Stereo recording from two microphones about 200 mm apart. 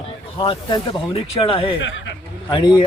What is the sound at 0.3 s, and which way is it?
A man's voice, 25° left (ahead or behind).